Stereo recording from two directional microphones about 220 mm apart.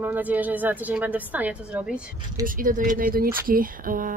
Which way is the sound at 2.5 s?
40° right (ahead or behind).